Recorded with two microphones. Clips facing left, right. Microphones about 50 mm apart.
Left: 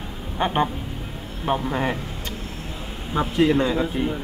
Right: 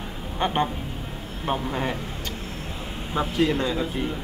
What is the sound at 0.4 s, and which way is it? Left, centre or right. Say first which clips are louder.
Speech: left 2 dB; centre.